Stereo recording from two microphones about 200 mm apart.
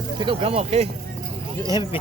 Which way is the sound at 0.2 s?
25° right (ahead or behind).